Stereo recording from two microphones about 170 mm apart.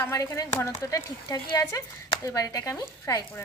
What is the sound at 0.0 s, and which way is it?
Speech, 15° left (ahead or behind).